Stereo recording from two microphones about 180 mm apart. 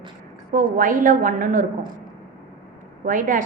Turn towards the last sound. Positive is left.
turn(degrees=-45)  # may be behind; listen again after turning